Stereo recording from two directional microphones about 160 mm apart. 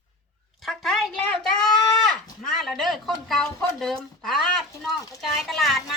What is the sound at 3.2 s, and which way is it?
Speech, centre (ahead or behind).